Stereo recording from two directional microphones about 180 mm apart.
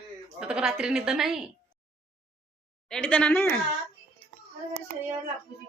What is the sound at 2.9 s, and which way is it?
Speech, 5° left (ahead or behind).